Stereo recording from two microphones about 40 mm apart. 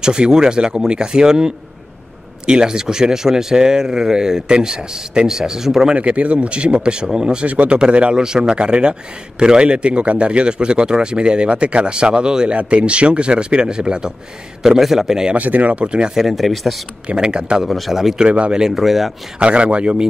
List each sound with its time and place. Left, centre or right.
0.0 s a man's voice: centre
5.9 s a man's voice: right
7.4 s a man's voice: right
14.6 s speech: centre
15.3 s speech: right
16.2 s speech: centre
17.1 s a man's voice: right
17.6 s speech: centre
19.4 s speech: right